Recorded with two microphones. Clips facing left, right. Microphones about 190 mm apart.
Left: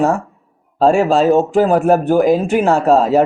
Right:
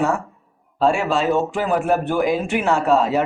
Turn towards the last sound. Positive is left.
turn(degrees=40)  # may be behind; listen again after turning